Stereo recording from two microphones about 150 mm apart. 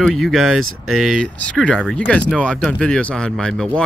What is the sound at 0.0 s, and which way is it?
Speech, centre (ahead or behind).